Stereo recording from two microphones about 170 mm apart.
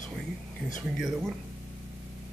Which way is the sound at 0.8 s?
Centre (ahead or behind).